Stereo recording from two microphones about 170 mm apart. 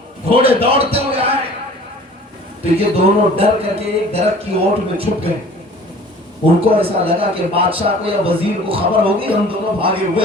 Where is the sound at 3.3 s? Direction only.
35° right (ahead or behind).